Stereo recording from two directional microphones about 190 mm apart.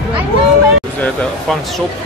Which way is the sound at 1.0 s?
5° left (ahead or behind).